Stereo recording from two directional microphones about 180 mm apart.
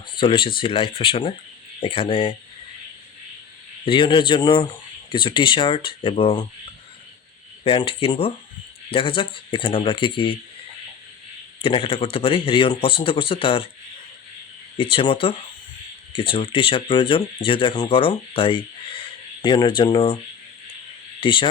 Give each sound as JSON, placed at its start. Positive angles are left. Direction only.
{"t": 0.2, "sound": "speech", "side_deg": 30}
{"t": 3.8, "sound": "speech", "side_deg": 30}
{"t": 7.6, "sound": "speech", "side_deg": 30}
{"t": 11.6, "sound": "speech", "side_deg": 30}
{"t": 14.8, "sound": "speech", "side_deg": 30}
{"t": 21.2, "sound": "speech", "side_deg": 30}